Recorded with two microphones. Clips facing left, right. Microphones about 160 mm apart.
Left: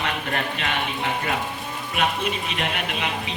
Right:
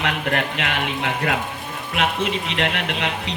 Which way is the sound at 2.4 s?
85° right.